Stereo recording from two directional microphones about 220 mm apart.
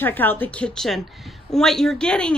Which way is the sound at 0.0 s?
10° left (ahead or behind).